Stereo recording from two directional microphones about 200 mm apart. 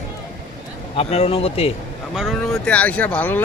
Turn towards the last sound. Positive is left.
turn(degrees=10)  # may be behind; listen again after turning